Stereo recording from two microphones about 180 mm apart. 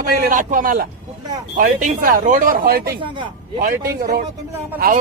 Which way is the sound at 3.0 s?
25° right (ahead or behind).